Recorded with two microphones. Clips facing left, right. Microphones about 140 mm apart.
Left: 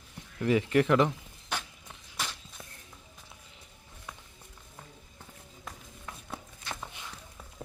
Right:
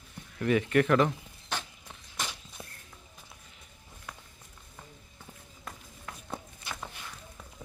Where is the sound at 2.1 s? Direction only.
Centre (ahead or behind).